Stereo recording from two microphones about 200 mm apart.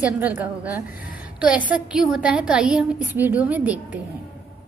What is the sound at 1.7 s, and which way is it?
A woman's voice, 5° right (ahead or behind).